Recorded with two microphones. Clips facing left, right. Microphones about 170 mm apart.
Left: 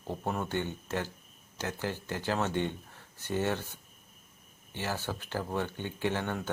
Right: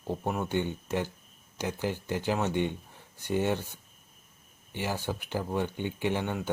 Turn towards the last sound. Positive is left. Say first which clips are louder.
# right 2 dB
turn(degrees=-15)  # may be behind; listen again after turning